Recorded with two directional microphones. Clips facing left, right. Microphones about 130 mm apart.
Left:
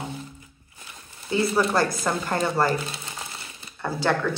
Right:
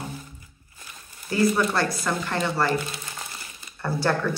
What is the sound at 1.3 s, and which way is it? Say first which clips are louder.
Speech: even; 30° left (ahead or behind).